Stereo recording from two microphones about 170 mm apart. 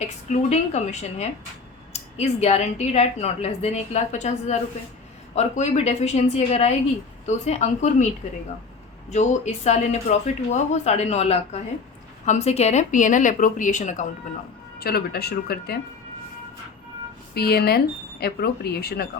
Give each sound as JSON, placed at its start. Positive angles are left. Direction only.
{"t": 0.0, "sound": "a woman's voice", "side_deg": 40}
{"t": 14.8, "sound": "speech", "side_deg": 65}
{"t": 17.3, "sound": "speech", "side_deg": 70}